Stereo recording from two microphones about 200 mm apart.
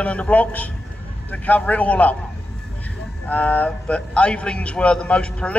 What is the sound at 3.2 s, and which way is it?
A man's voice, 10° left (ahead or behind).